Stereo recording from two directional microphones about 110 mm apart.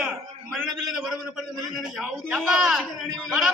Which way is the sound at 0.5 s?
Centre (ahead or behind).